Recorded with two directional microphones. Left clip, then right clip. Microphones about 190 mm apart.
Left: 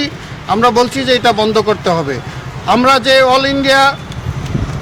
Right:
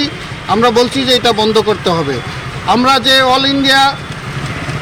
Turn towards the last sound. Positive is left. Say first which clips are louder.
# even
turn(degrees=30)  # may be behind; listen again after turning